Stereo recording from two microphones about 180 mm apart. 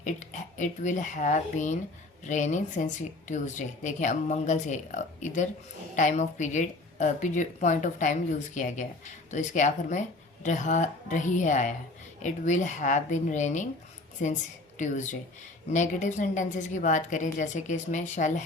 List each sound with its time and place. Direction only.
0.0 s a woman's voice: 45° left (ahead or behind)
14.8 s a woman's voice: 45° left (ahead or behind)